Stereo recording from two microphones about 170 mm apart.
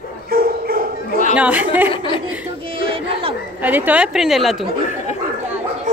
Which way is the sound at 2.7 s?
30° right (ahead or behind).